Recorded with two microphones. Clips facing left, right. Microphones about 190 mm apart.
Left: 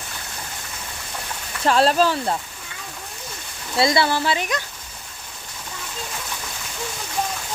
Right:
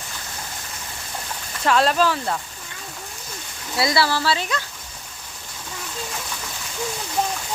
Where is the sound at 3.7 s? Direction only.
25° left (ahead or behind).